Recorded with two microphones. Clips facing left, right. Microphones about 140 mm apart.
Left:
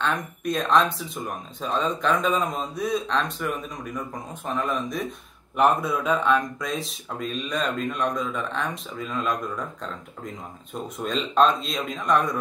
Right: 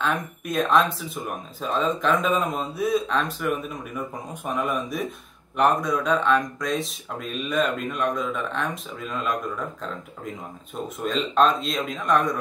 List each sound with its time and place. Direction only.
0.0 s speech: 5° right (ahead or behind)
5.6 s speech: 5° left (ahead or behind)
10.7 s speech: centre (ahead or behind)